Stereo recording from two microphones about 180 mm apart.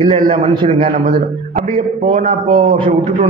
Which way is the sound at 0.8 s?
50° right (ahead or behind).